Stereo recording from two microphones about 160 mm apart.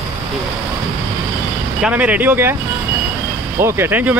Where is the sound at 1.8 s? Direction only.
10° right (ahead or behind).